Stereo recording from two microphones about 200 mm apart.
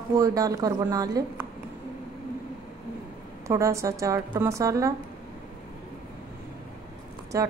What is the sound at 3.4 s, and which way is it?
A woman's voice, 15° right (ahead or behind).